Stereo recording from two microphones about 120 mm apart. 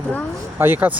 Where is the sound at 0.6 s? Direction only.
15° right (ahead or behind).